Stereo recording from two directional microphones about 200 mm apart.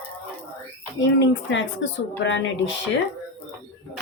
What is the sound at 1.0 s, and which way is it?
Speech, 65° left (ahead or behind).